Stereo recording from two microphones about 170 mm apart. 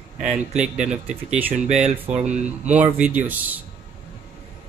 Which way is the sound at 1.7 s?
40° right (ahead or behind).